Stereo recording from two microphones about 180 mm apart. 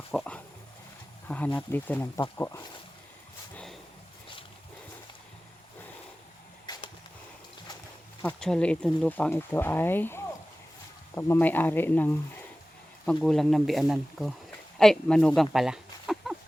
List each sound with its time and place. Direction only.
0.1 s pig: 5° left (ahead or behind)
1.5 s speech: 10° left (ahead or behind)
3.5 s a sound: 5° left (ahead or behind)
6.7 s arrow: 25° left (ahead or behind)
8.2 s speech: 5° left (ahead or behind)
15.4 s a sound: centre (ahead or behind)